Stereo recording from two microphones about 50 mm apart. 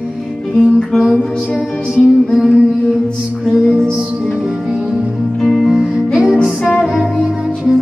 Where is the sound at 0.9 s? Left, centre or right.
Centre.